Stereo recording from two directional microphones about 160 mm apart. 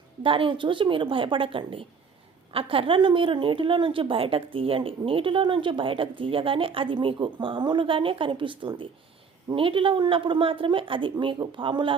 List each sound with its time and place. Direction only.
0.2 s a woman's voice: 35° right (ahead or behind)